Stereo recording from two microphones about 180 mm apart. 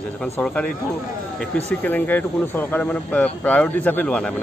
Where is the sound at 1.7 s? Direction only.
10° left (ahead or behind).